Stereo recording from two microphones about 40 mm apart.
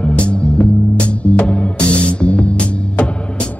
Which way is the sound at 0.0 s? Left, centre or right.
Left.